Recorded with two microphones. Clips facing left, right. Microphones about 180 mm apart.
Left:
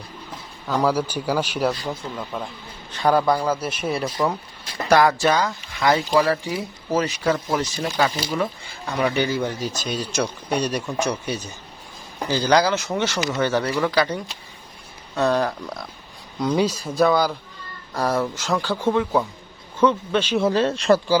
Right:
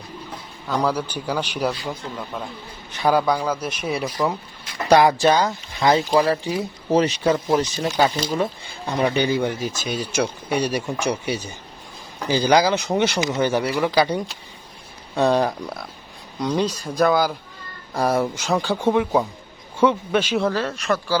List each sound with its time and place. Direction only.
0.7 s a man's voice: 5° left (ahead or behind)
4.9 s speech: 15° right (ahead or behind)
9.6 s speech: 50° right (ahead or behind)
9.9 s speech: 5° right (ahead or behind)
16.4 s speech: 5° left (ahead or behind)
17.9 s speech: 10° right (ahead or behind)
20.5 s speech: 25° left (ahead or behind)